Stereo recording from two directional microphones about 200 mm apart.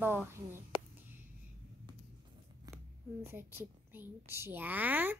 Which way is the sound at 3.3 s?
10° right (ahead or behind).